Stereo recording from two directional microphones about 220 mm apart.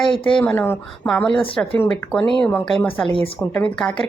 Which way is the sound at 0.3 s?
5° left (ahead or behind).